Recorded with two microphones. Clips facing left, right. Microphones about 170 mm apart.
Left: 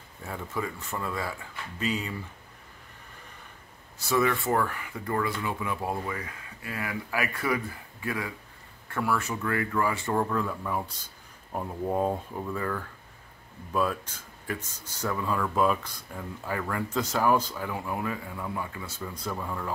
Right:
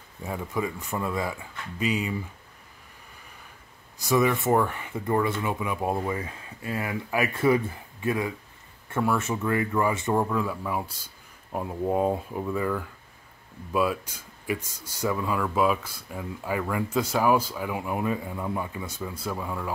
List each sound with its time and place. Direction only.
0.2 s speech: 15° right (ahead or behind)
4.0 s speech: 15° right (ahead or behind)